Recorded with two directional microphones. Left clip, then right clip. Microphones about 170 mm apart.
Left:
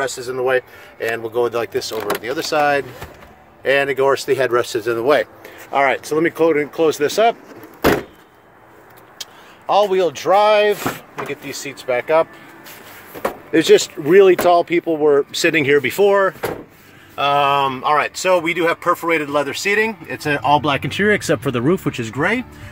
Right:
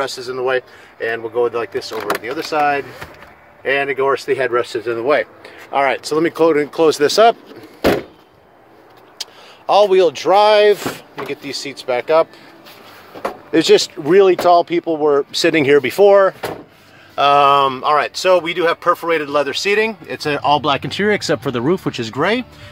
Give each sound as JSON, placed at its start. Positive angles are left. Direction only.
{"t": 0.0, "sound": "speech", "side_deg": 5}
{"t": 5.7, "sound": "speech", "side_deg": -5}
{"t": 9.2, "sound": "speech", "side_deg": -25}
{"t": 13.5, "sound": "speech", "side_deg": -15}
{"t": 15.6, "sound": "speech", "side_deg": -25}
{"t": 17.1, "sound": "speech", "side_deg": -30}
{"t": 22.0, "sound": "speech", "side_deg": -20}